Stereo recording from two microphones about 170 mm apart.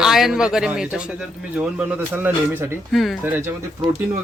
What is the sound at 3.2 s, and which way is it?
Speech, 10° right (ahead or behind).